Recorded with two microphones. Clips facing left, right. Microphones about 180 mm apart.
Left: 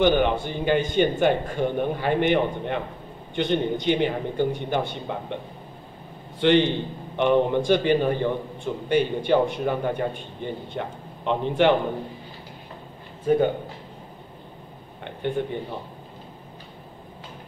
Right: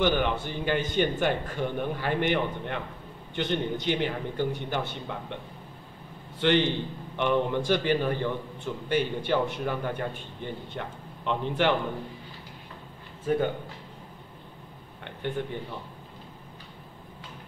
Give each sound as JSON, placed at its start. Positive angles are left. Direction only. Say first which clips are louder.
{"t": 0.0, "sound": "a man's voice", "louder": "left 5 dB", "side_deg": 20}
{"t": 6.4, "sound": "a man's voice", "louder": "left 5 dB", "side_deg": 20}
{"t": 13.3, "sound": "a man's voice", "louder": "left 6 dB", "side_deg": 20}
{"t": 15.0, "sound": "speech", "louder": "left 5 dB", "side_deg": 15}